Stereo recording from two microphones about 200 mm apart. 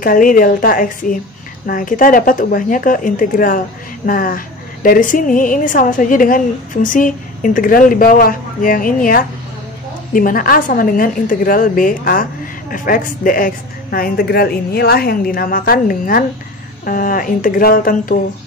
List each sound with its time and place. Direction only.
0.0 s a woman's voice: 45° left (ahead or behind)